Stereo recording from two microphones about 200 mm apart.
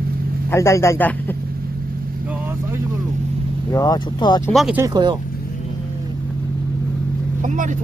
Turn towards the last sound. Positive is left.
turn(degrees=-40)  # may be behind; listen again after turning